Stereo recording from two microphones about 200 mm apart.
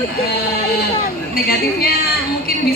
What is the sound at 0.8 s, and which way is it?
A man's voice, 50° left (ahead or behind).